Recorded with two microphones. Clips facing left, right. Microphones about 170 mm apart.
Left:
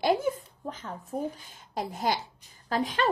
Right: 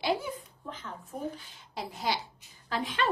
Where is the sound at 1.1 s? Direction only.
40° left (ahead or behind).